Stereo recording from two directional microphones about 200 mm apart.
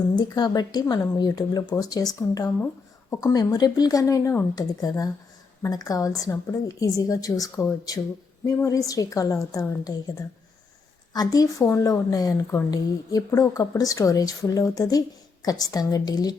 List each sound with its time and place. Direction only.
0.2 s speech: 20° left (ahead or behind)